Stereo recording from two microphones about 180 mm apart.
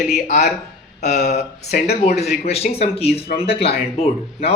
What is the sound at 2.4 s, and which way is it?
Speech, 35° left (ahead or behind).